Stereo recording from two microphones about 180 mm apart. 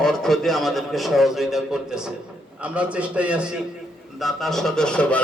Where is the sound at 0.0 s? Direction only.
Centre (ahead or behind).